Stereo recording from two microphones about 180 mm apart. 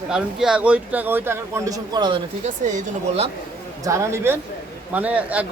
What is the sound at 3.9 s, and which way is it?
Speech, 15° right (ahead or behind).